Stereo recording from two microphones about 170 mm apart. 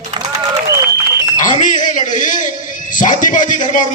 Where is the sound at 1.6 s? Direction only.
50° left (ahead or behind).